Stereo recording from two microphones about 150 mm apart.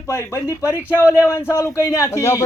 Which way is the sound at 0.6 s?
10° right (ahead or behind).